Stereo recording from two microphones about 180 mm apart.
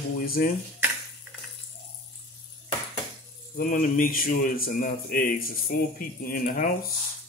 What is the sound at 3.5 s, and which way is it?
Speech, 50° left (ahead or behind).